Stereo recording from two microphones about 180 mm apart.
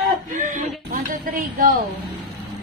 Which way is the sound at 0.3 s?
50° right (ahead or behind).